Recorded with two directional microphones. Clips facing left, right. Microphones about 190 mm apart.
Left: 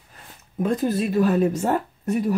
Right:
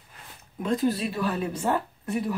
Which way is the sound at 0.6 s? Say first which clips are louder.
Left 3 dB; 50° left (ahead or behind).